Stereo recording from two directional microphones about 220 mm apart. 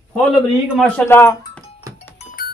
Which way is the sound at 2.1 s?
40° left (ahead or behind).